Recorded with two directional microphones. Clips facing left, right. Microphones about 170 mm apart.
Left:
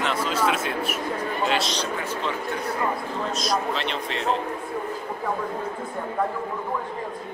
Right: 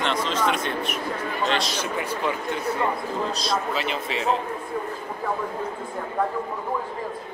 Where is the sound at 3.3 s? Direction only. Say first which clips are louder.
Left 1 dB; 30° right (ahead or behind).